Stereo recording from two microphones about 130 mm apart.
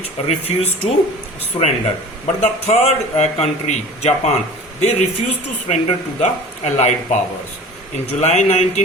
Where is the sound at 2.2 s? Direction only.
55° left (ahead or behind).